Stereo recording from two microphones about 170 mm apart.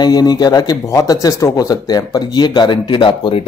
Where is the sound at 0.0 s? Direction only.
25° left (ahead or behind).